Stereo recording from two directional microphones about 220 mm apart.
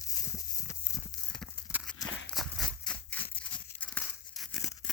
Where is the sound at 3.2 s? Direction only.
25° left (ahead or behind).